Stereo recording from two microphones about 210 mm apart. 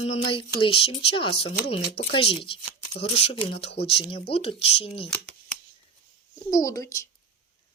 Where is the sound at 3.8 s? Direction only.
25° left (ahead or behind).